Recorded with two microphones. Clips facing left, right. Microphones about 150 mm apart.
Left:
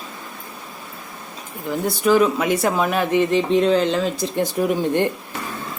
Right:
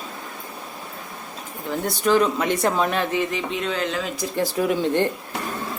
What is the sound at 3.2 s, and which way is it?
Speech, 30° left (ahead or behind).